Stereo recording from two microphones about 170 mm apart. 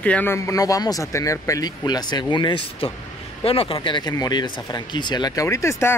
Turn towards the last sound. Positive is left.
turn(degrees=15)  # may be behind; listen again after turning